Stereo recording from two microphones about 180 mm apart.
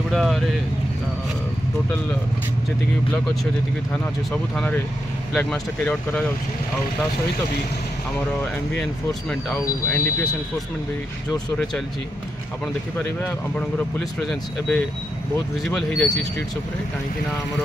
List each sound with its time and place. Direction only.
0.1 s speech: centre (ahead or behind)
3.9 s speech: 5° left (ahead or behind)
9.8 s speech: 15° left (ahead or behind)
11.5 s speech: 5° left (ahead or behind)
13.2 s speech: 5° left (ahead or behind)